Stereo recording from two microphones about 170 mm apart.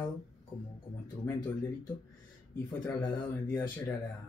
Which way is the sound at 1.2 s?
10° left (ahead or behind).